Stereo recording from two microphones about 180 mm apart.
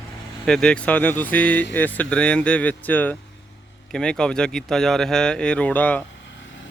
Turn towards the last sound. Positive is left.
turn(degrees=10)  # may be behind; listen again after turning